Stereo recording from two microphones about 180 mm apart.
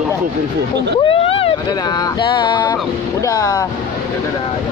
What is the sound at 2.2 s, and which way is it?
Speech, 25° left (ahead or behind).